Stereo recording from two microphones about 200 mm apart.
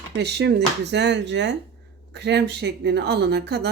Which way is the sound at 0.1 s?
55° right (ahead or behind).